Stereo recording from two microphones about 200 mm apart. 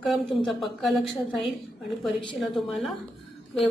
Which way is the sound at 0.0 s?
Centre (ahead or behind).